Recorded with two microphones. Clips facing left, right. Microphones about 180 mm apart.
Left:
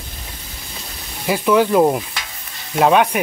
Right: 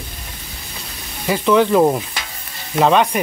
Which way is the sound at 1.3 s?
10° left (ahead or behind).